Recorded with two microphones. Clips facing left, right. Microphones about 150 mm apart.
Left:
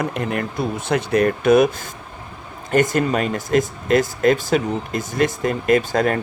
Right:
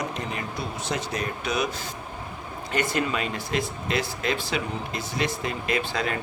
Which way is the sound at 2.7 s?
45° left (ahead or behind).